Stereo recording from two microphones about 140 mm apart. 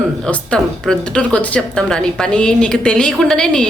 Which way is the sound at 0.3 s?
5° left (ahead or behind).